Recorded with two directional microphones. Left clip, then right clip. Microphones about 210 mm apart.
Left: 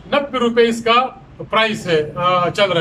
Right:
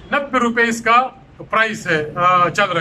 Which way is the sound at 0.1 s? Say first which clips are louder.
Left 1 dB; 10° left (ahead or behind).